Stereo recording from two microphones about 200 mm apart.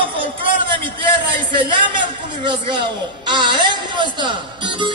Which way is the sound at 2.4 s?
25° right (ahead or behind).